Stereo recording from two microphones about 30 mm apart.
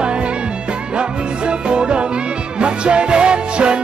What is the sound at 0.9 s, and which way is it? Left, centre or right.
Music, right.